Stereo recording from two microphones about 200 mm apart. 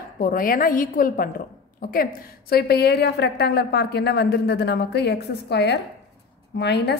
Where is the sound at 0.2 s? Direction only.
45° left (ahead or behind).